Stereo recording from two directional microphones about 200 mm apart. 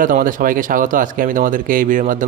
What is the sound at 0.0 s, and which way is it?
A man's voice, 40° right (ahead or behind).